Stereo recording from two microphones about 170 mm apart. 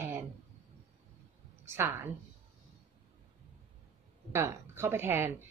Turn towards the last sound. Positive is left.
turn(degrees=-10)  # may be behind; listen again after turning